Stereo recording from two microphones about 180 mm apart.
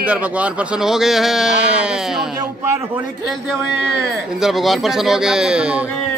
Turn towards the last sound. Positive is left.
turn(degrees=-5)  # may be behind; listen again after turning